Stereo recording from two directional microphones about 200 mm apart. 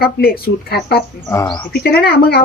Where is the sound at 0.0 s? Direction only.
50° left (ahead or behind).